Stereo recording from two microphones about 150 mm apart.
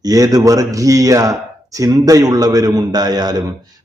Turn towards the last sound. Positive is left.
turn(degrees=-25)  # may be behind; listen again after turning